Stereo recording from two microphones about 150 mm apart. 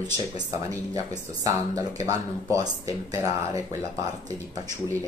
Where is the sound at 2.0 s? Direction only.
20° right (ahead or behind).